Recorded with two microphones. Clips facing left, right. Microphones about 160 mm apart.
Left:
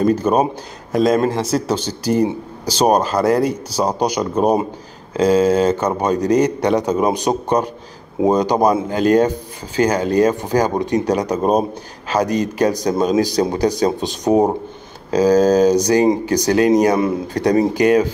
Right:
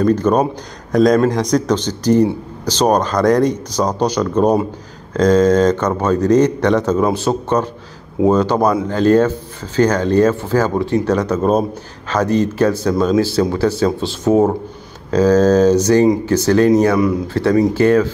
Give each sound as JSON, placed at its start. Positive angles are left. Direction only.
{"t": 0.0, "sound": "a man's voice", "side_deg": 10}